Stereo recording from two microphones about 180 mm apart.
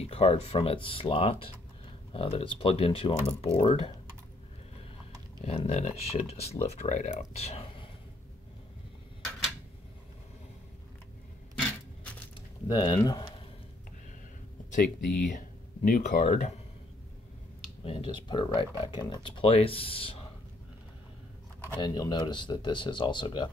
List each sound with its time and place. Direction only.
0.0 s speech: 35° left (ahead or behind)
5.4 s speech: 35° left (ahead or behind)
12.6 s speech: 20° left (ahead or behind)
15.3 s speech: 45° left (ahead or behind)
17.8 s speech: 30° left (ahead or behind)
21.7 s speech: 25° left (ahead or behind)